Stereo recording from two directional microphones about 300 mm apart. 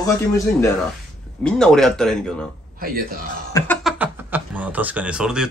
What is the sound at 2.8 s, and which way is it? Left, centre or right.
Speech, right.